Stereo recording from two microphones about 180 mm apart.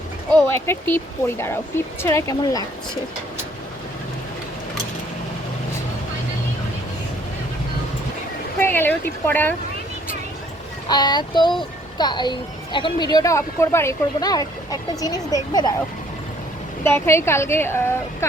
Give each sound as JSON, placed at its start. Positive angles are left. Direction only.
{"t": 0.4, "sound": "speech", "side_deg": 15}
{"t": 8.5, "sound": "speech", "side_deg": 10}
{"t": 10.8, "sound": "a woman's voice", "side_deg": 25}
{"t": 16.8, "sound": "speech", "side_deg": 15}